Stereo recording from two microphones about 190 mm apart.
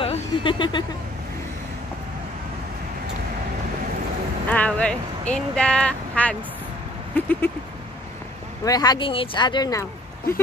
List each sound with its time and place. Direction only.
0.0 s a sound: 30° left (ahead or behind)
4.5 s speech: 5° left (ahead or behind)
8.6 s speech: 20° left (ahead or behind)